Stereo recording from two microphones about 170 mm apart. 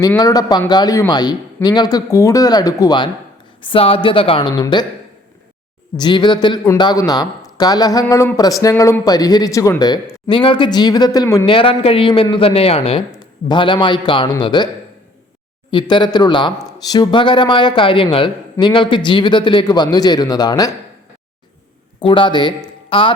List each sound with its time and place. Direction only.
0.2 s speech: 20° left (ahead or behind)
6.0 s speech: 25° left (ahead or behind)
15.7 s speech: 25° left (ahead or behind)
22.0 s speech: 30° left (ahead or behind)